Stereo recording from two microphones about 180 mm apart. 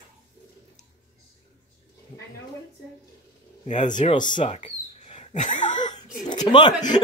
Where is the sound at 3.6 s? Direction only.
40° left (ahead or behind).